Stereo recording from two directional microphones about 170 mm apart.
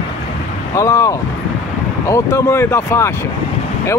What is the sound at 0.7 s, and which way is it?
Speech, 20° left (ahead or behind).